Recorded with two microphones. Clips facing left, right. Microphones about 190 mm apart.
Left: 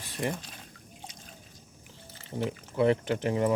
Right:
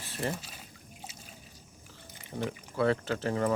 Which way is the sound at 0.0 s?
15° left (ahead or behind).